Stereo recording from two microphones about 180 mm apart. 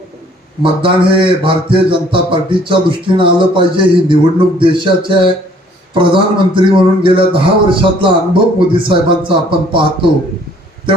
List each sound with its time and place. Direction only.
0.6 s a man's voice: 30° right (ahead or behind)